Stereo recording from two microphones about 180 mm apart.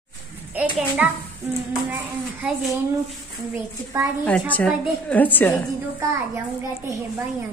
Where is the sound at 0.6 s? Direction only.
5° right (ahead or behind).